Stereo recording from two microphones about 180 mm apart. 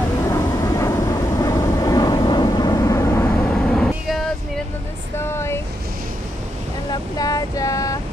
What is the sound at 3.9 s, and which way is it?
Vehicle, centre (ahead or behind).